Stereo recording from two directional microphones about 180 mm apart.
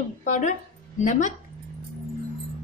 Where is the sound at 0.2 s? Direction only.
45° left (ahead or behind).